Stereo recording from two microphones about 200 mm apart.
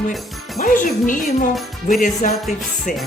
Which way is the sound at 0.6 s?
40° left (ahead or behind).